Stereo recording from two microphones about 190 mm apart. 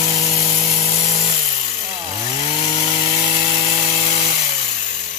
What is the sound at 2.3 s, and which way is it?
Chainsaw, 30° left (ahead or behind).